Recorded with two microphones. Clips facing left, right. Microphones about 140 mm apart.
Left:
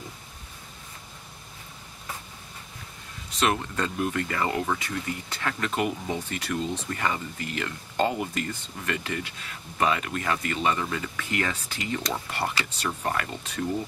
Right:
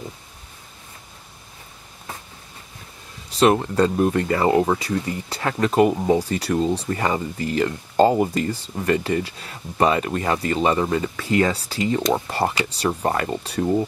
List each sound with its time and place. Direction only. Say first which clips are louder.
3.3 s speech: right 9 dB; 35° right (ahead or behind)